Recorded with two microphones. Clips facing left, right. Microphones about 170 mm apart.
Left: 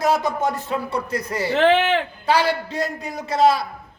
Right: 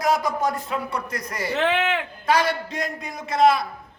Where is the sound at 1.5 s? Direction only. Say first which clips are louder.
Left 6 dB; 75° left (ahead or behind).